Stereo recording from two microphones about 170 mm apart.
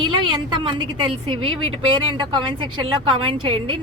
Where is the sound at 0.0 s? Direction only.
25° right (ahead or behind).